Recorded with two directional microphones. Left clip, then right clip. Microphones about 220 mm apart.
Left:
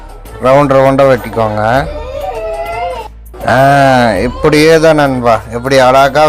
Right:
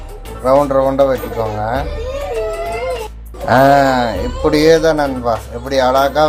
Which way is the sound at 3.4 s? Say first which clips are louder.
Left 3 dB; 30° left (ahead or behind).